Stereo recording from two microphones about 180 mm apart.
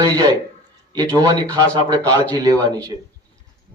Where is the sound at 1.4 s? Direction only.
20° right (ahead or behind).